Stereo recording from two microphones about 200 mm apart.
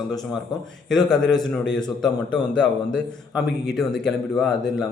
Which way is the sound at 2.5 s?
5° left (ahead or behind).